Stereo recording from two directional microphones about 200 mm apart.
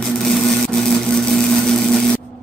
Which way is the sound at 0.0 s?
Centre (ahead or behind).